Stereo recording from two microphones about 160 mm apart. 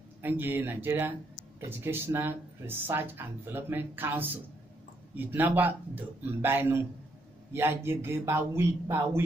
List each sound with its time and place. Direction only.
0.2 s speech: 10° right (ahead or behind)